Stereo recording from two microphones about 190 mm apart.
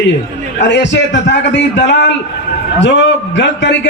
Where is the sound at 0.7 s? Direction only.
70° left (ahead or behind).